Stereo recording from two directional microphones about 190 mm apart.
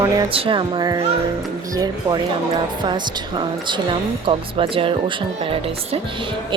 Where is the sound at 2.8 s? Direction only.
25° right (ahead or behind).